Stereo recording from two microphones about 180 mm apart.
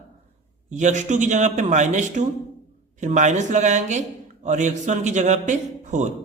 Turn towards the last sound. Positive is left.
turn(degrees=-40)  # may be behind; listen again after turning